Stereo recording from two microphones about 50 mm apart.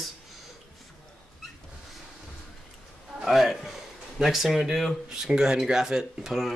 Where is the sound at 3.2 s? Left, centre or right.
Centre.